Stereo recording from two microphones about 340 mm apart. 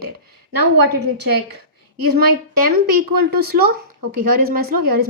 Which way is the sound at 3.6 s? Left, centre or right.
Right.